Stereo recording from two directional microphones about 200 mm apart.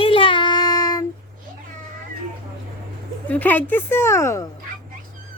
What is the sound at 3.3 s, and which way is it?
A woman's voice, 10° left (ahead or behind).